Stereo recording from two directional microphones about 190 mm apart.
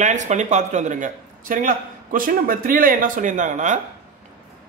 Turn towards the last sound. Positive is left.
turn(degrees=-40)  # may be behind; listen again after turning